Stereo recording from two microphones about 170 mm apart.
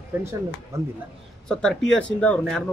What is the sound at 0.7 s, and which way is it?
Speech, 15° right (ahead or behind).